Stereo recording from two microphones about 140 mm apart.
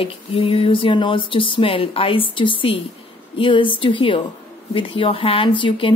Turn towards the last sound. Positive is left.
turn(degrees=35)  # may be behind; listen again after turning